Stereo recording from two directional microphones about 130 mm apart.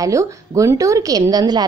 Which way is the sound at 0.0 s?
25° right (ahead or behind).